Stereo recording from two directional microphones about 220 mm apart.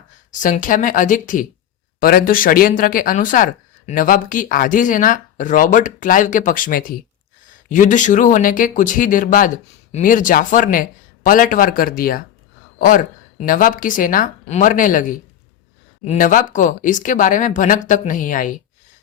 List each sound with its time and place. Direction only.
0.3 s speech: 35° left (ahead or behind)
16.0 s speech: 35° left (ahead or behind)